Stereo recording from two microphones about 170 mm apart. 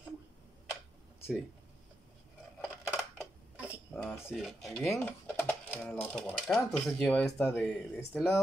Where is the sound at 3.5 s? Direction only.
10° right (ahead or behind).